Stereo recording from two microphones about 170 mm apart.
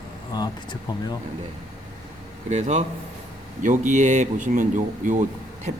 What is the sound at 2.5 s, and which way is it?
A man's voice, 40° right (ahead or behind).